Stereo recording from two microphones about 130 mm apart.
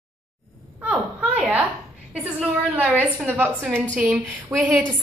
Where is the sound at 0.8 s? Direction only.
10° right (ahead or behind).